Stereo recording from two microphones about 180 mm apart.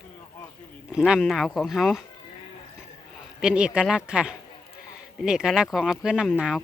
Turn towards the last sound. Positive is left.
turn(degrees=-5)  # may be behind; listen again after turning